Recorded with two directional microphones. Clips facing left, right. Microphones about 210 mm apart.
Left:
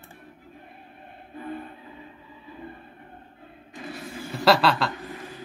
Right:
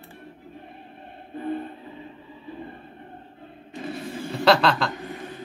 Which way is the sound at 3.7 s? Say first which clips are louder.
Right 5 dB; 25° right (ahead or behind).